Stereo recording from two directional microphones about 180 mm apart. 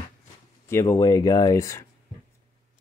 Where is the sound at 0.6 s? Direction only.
15° left (ahead or behind).